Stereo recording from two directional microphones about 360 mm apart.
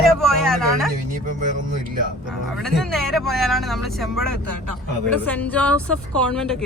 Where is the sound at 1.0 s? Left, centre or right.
Right.